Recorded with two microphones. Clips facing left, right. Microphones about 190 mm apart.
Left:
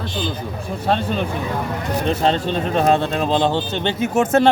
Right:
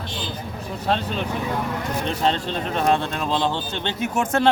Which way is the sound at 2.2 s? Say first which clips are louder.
Left 4 dB; 35° left (ahead or behind).